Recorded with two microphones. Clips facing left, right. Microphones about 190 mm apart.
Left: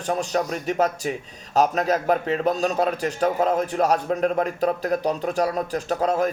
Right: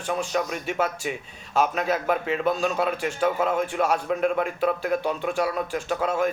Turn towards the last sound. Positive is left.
turn(degrees=40)  # may be behind; listen again after turning